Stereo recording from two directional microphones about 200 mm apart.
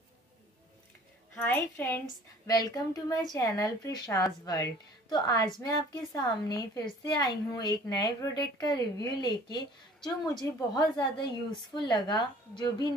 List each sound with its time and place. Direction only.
1.3 s a woman's voice: 10° left (ahead or behind)